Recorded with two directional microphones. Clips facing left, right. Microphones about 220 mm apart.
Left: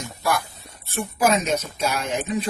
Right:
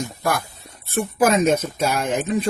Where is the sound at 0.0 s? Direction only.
50° right (ahead or behind).